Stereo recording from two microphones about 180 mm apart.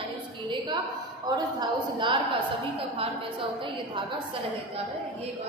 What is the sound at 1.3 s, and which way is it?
Speech, 25° right (ahead or behind).